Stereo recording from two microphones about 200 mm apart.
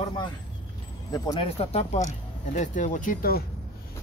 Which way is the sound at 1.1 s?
25° left (ahead or behind).